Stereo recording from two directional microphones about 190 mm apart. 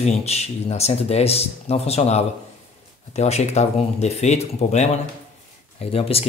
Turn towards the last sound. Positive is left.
turn(degrees=30)  # may be behind; listen again after turning